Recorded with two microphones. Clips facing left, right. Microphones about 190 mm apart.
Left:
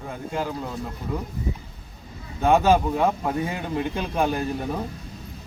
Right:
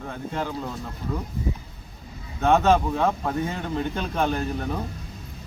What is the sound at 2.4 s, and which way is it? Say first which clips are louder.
Speech: left 1 dB; 10° left (ahead or behind).